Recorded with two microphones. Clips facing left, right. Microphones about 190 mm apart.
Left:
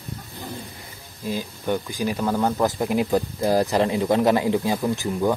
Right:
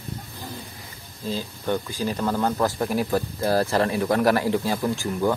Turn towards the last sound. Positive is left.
turn(degrees=15)  # may be behind; listen again after turning